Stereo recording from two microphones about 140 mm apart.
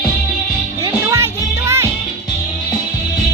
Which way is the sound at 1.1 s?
20° right (ahead or behind).